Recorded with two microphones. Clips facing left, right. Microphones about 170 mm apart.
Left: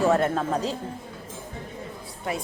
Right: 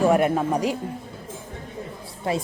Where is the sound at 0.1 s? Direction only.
15° right (ahead or behind).